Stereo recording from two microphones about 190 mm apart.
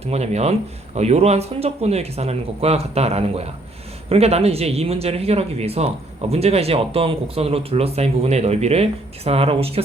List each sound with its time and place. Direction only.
0.0 s speech: 35° right (ahead or behind)